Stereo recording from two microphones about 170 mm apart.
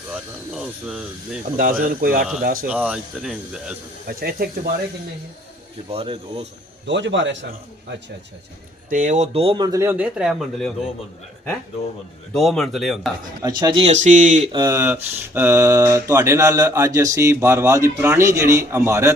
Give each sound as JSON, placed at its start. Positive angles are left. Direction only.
{"t": 0.1, "sound": "speech", "side_deg": -5}
{"t": 1.8, "sound": "speech", "side_deg": -60}
{"t": 2.6, "sound": "speech", "side_deg": -10}
{"t": 4.2, "sound": "speech", "side_deg": -65}
{"t": 5.9, "sound": "speech", "side_deg": -35}
{"t": 6.8, "sound": "a man's voice", "side_deg": -90}
{"t": 8.9, "sound": "speech", "side_deg": -50}
{"t": 9.7, "sound": "speech", "side_deg": -15}
{"t": 12.3, "sound": "speech", "side_deg": 0}
{"t": 13.6, "sound": "speech", "side_deg": -25}
{"t": 13.8, "sound": "speech", "side_deg": -45}
{"t": 14.5, "sound": "speech", "side_deg": -20}